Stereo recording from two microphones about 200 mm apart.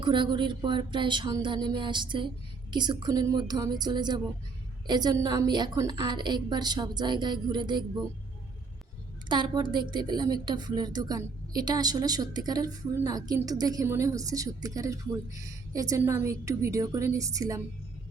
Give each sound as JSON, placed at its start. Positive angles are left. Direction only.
{"t": 0.0, "sound": "a woman's voice", "side_deg": -25}
{"t": 9.3, "sound": "a woman's voice", "side_deg": -20}